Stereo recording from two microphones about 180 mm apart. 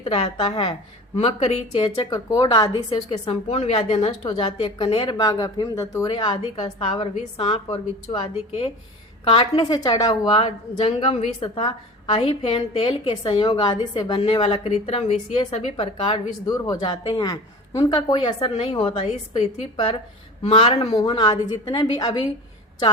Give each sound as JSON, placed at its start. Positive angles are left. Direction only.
{"t": 0.0, "sound": "a woman's voice", "side_deg": 35}
{"t": 16.5, "sound": "a woman's voice", "side_deg": 20}